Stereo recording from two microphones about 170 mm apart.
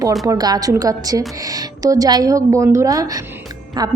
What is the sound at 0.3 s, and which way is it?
A woman's voice, 20° right (ahead or behind).